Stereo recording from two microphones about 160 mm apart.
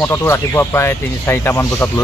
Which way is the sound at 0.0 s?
15° left (ahead or behind).